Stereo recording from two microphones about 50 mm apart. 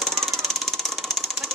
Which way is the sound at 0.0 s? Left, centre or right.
Centre.